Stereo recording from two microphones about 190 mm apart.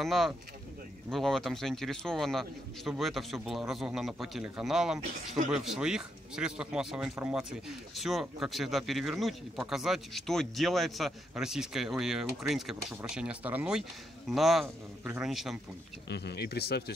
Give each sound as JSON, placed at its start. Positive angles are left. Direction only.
{"t": 0.0, "sound": "speech", "side_deg": 0}
{"t": 16.1, "sound": "speech", "side_deg": 60}